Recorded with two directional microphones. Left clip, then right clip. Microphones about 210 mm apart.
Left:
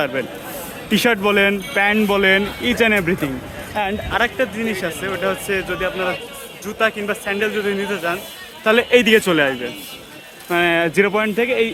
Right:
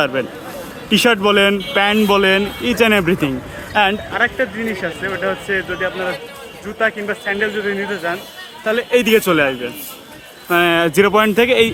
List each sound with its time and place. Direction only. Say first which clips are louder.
0.0 s speech: right 3 dB; 5° right (ahead or behind)
4.2 s speech: right 2 dB; 10° left (ahead or behind)
8.6 s a man's voice: left 3 dB; 40° left (ahead or behind)
9.0 s speech: right 1 dB; 5° left (ahead or behind); by 11.7 s 10° right (ahead or behind)